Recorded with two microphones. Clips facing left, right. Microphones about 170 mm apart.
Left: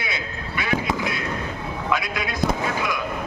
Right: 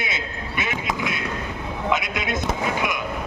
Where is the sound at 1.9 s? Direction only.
20° right (ahead or behind).